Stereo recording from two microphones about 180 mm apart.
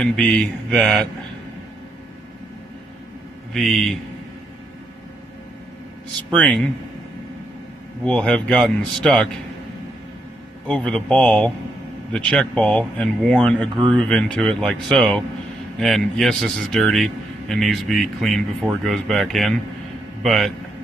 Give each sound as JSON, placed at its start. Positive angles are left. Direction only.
{"t": 0.0, "sound": "a man's voice", "side_deg": 5}
{"t": 3.5, "sound": "a man's voice", "side_deg": 5}
{"t": 6.3, "sound": "a man's voice", "side_deg": 5}
{"t": 8.0, "sound": "a man's voice", "side_deg": 5}
{"t": 10.7, "sound": "a man's voice", "side_deg": 5}